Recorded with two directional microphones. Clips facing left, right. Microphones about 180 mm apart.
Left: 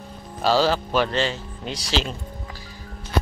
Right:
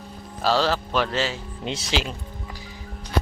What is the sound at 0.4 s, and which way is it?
Speech, centre (ahead or behind).